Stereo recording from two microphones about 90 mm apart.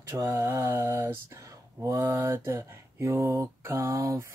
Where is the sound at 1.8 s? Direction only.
35° right (ahead or behind).